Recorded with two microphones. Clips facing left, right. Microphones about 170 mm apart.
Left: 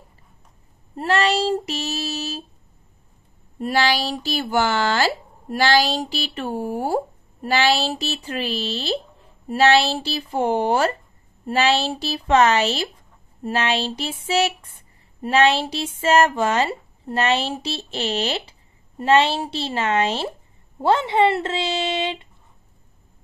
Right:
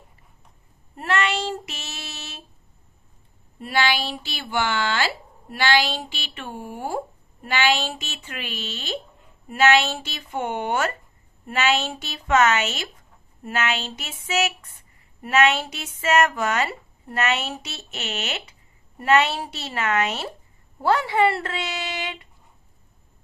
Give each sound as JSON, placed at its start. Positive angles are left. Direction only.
{"t": 0.9, "sound": "child singing", "side_deg": 35}
{"t": 3.5, "sound": "speech", "side_deg": 40}